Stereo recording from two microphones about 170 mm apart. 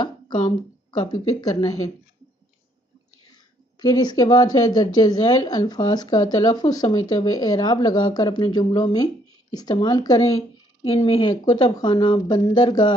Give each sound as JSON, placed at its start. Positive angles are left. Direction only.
{"t": 0.9, "sound": "a woman's voice", "side_deg": 20}
{"t": 3.8, "sound": "a woman's voice", "side_deg": 25}